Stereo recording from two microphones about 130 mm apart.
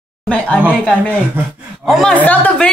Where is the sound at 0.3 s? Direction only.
10° left (ahead or behind).